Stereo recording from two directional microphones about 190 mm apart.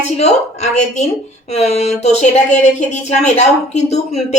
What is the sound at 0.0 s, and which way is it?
A woman's voice, 35° left (ahead or behind).